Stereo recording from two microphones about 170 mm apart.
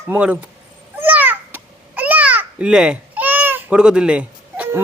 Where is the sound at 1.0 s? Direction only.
10° right (ahead or behind).